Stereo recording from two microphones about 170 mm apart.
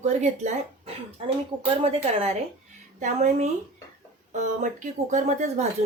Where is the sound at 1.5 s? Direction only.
10° right (ahead or behind).